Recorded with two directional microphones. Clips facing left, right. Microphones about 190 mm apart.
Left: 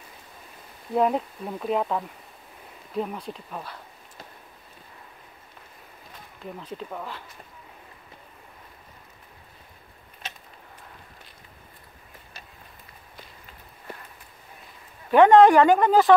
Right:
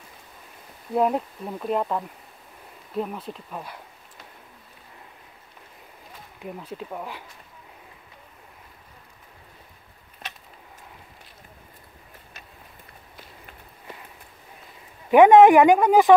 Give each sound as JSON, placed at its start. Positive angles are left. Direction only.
{"t": 0.9, "sound": "speech", "side_deg": 0}
{"t": 6.4, "sound": "speech", "side_deg": -10}
{"t": 15.0, "sound": "speech", "side_deg": -15}